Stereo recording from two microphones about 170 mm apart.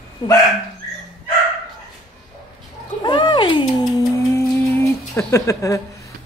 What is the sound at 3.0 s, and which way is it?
Cat, 30° left (ahead or behind).